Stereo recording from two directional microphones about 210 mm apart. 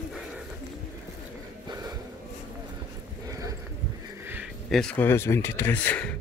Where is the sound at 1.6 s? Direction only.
20° right (ahead or behind).